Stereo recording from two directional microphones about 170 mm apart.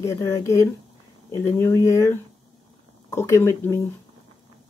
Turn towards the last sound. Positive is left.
turn(degrees=15)  # may be behind; listen again after turning